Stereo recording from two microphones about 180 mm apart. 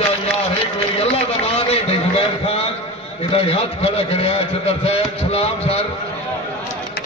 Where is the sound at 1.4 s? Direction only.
35° left (ahead or behind).